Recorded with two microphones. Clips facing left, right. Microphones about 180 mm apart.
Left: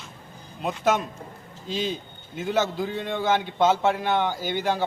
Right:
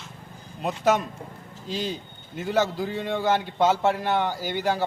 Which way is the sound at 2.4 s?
5° right (ahead or behind).